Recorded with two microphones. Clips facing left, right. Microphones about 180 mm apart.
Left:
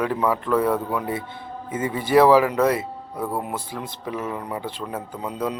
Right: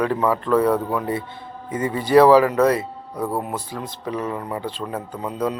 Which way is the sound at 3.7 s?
15° left (ahead or behind).